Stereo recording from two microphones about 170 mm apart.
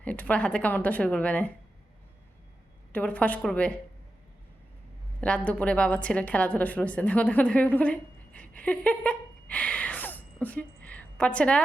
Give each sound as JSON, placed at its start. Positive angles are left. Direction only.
{"t": 0.0, "sound": "a woman's voice", "side_deg": 10}
{"t": 2.9, "sound": "a woman's voice", "side_deg": 10}
{"t": 5.2, "sound": "a woman's voice", "side_deg": 5}
{"t": 8.4, "sound": "a sound", "side_deg": 10}